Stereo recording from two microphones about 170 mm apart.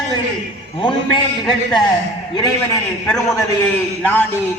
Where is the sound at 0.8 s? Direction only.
30° left (ahead or behind).